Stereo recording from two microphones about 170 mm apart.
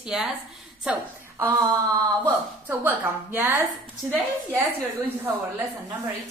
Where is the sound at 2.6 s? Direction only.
10° right (ahead or behind).